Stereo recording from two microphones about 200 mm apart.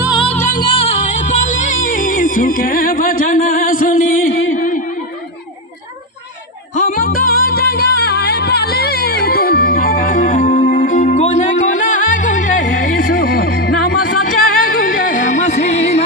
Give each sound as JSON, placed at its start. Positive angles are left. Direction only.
{"t": 0.6, "sound": "music", "side_deg": 25}
{"t": 4.6, "sound": "a sound", "side_deg": 40}
{"t": 6.7, "sound": "music", "side_deg": 40}